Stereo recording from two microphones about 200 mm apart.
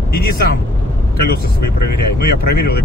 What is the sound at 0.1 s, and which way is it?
Speech, 50° left (ahead or behind).